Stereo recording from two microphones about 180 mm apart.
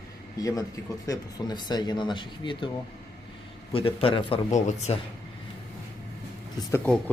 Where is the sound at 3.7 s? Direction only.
30° left (ahead or behind).